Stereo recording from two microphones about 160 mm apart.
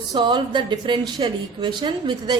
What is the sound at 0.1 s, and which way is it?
A woman's voice, 25° right (ahead or behind).